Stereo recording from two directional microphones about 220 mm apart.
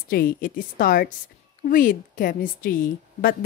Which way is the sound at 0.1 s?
40° left (ahead or behind).